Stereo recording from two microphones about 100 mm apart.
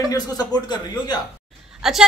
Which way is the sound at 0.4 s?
40° left (ahead or behind).